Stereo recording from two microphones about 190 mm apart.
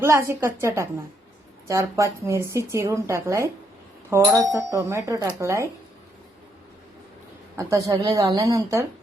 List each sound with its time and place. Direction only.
0.0 s a woman's voice: 15° right (ahead or behind)
7.5 s a woman's voice: 15° right (ahead or behind)